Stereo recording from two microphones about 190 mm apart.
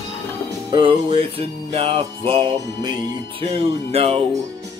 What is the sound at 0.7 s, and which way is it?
Music, 25° right (ahead or behind).